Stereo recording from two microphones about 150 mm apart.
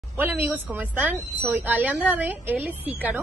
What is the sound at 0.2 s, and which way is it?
A woman's voice, 10° right (ahead or behind).